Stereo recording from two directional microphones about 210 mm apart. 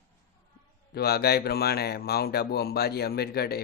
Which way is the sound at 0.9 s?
50° left (ahead or behind).